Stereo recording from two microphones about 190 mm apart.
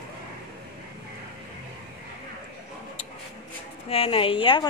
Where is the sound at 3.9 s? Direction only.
30° left (ahead or behind).